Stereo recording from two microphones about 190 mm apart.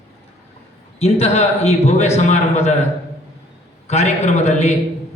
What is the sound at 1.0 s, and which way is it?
A man's voice, 35° left (ahead or behind).